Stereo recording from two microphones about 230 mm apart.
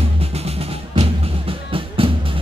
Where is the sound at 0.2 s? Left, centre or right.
Right.